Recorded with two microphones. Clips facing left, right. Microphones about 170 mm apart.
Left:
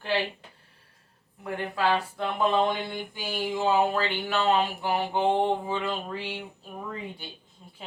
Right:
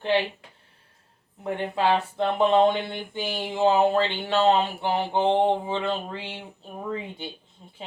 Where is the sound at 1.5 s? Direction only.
25° right (ahead or behind).